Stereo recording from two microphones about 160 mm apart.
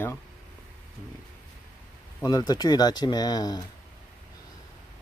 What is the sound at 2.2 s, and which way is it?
Speech, 25° left (ahead or behind).